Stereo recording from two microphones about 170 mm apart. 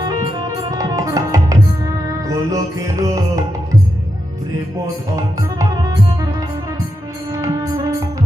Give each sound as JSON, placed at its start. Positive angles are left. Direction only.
{"t": 0.0, "sound": "music", "side_deg": -25}
{"t": 7.3, "sound": "music", "side_deg": -20}